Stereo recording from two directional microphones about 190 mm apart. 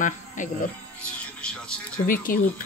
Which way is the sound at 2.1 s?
50° left (ahead or behind).